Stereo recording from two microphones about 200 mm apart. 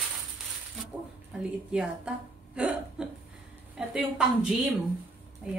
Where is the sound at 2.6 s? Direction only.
5° right (ahead or behind).